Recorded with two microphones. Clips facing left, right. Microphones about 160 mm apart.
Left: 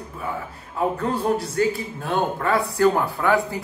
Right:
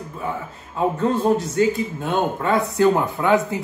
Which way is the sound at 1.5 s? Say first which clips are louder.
Right 3 dB; 20° right (ahead or behind).